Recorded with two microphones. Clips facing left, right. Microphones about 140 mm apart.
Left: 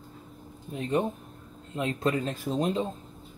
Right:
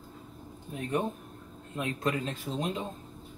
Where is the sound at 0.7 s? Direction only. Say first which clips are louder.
Left 4 dB; 20° left (ahead or behind).